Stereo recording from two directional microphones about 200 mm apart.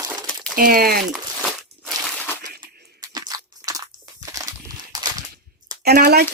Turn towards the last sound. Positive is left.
turn(degrees=-50)  # may be behind; listen again after turning